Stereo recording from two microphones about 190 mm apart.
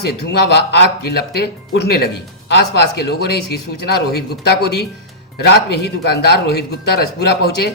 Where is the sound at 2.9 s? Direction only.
55° left (ahead or behind).